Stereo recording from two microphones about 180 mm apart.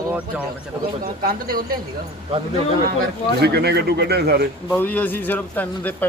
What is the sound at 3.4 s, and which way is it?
A man's voice, 65° right (ahead or behind).